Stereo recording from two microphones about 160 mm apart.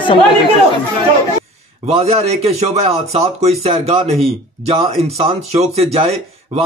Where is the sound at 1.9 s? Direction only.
40° right (ahead or behind).